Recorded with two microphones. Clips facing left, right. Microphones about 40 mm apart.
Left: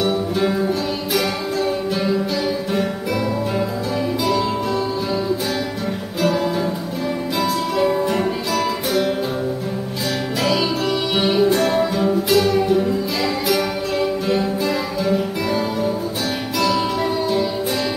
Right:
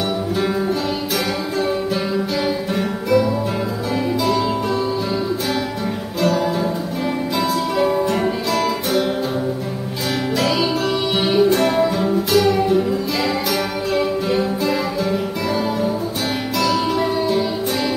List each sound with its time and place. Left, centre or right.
0.0 s music: centre
2.7 s guitar: centre
4.2 s music: centre
6.2 s music: centre
10.4 s music: centre